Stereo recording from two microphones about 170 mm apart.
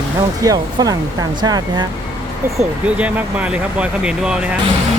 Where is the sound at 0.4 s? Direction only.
20° right (ahead or behind).